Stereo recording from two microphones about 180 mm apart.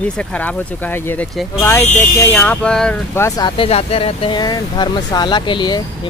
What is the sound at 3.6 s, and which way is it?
Speech, 35° left (ahead or behind).